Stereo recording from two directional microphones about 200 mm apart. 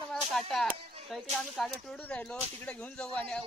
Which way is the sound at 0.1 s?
Centre (ahead or behind).